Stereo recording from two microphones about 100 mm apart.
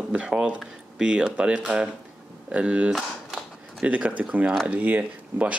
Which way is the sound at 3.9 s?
10° right (ahead or behind).